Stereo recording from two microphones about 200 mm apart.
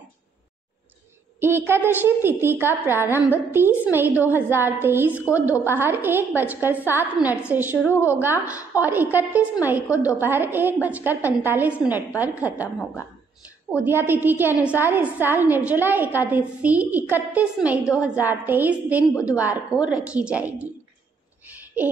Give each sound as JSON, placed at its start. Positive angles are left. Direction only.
{"t": 1.4, "sound": "a woman's voice", "side_deg": -10}
{"t": 13.8, "sound": "a woman's voice", "side_deg": -10}